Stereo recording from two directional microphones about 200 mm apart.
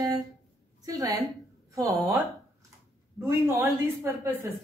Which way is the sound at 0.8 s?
20° right (ahead or behind).